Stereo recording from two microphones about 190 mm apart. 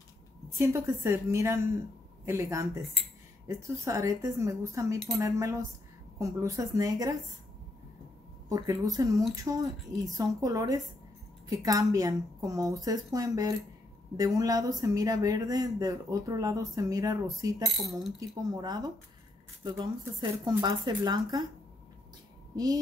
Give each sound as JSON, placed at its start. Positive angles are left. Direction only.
{"t": 0.6, "sound": "speech", "side_deg": -15}
{"t": 4.9, "sound": "cutlery", "side_deg": 0}
{"t": 5.2, "sound": "speech", "side_deg": -15}
{"t": 8.5, "sound": "speech", "side_deg": -20}
{"t": 22.5, "sound": "speech", "side_deg": -20}